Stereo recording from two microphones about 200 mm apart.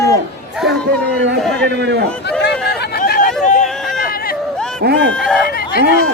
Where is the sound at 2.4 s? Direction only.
50° left (ahead or behind).